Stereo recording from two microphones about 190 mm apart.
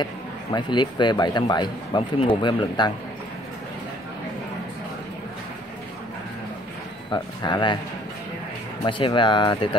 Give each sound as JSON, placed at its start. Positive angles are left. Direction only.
{"t": 0.0, "sound": "speech", "side_deg": 25}
{"t": 7.1, "sound": "speech", "side_deg": 25}
{"t": 8.8, "sound": "speech", "side_deg": 25}